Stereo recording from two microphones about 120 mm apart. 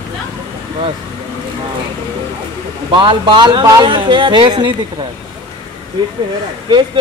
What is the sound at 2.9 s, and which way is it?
A man's voice, 45° right (ahead or behind).